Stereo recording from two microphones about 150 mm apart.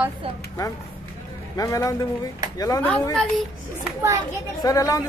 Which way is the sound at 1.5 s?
20° left (ahead or behind).